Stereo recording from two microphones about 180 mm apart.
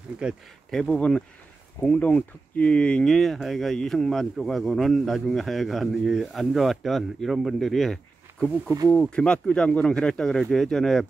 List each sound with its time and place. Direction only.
0.2 s speech: 5° left (ahead or behind)
8.6 s speech: 15° right (ahead or behind)
8.9 s speech: 5° left (ahead or behind)